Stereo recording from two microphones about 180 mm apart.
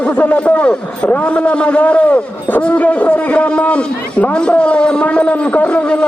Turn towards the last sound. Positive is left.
turn(degrees=5)  # may be behind; listen again after turning